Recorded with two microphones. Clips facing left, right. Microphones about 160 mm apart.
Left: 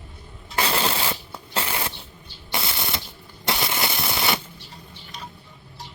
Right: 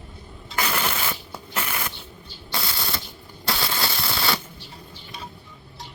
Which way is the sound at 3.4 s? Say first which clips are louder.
Left 1 dB; 20° left (ahead or behind).